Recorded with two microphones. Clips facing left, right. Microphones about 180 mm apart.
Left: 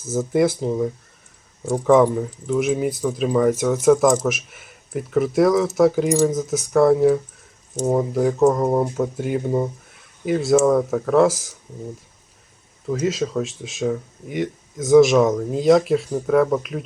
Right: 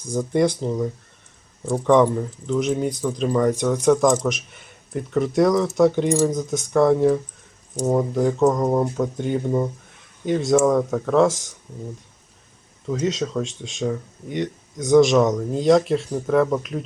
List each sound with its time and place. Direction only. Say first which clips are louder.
0.0 s speech: left 1 dB; 5° left (ahead or behind)
1.6 s speech: left 1 dB; 15° left (ahead or behind)
1.9 s speech: left 1 dB; 5° left (ahead or behind)
12.9 s speech: left 1 dB; centre (ahead or behind)